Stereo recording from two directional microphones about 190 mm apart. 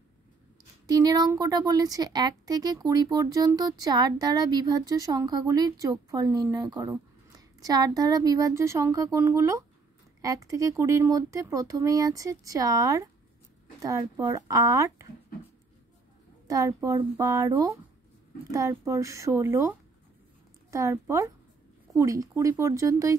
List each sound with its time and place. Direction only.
0.8 s a woman's voice: 20° right (ahead or behind)
16.4 s speech: 20° right (ahead or behind)
20.7 s speech: 15° right (ahead or behind)